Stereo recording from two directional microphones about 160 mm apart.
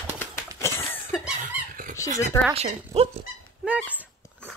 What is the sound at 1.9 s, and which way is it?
Speech, 20° left (ahead or behind).